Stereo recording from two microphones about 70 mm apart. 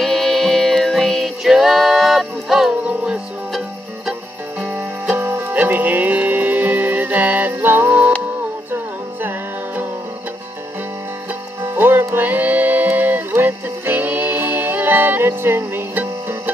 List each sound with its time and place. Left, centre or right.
0.0 s music: centre
2.7 s music: centre
5.2 s music: right
11.6 s music: right